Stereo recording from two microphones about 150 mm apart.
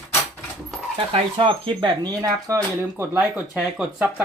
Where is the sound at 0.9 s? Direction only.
35° right (ahead or behind).